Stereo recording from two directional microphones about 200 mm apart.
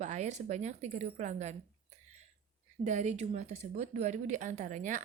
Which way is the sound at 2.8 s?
35° right (ahead or behind).